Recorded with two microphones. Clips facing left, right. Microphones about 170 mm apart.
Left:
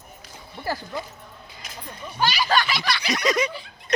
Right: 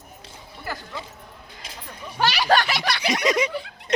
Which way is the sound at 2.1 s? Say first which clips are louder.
Right 2 dB; 70° right (ahead or behind).